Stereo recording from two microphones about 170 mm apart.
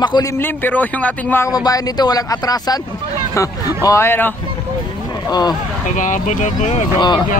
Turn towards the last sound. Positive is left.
turn(degrees=25)  # may be behind; listen again after turning